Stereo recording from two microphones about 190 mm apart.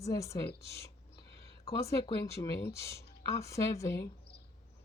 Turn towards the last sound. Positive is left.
turn(degrees=15)  # may be behind; listen again after turning